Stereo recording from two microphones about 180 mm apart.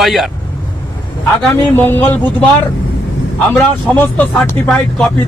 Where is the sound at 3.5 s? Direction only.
10° left (ahead or behind).